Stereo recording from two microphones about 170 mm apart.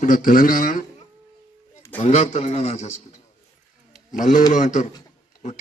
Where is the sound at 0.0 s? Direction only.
55° left (ahead or behind).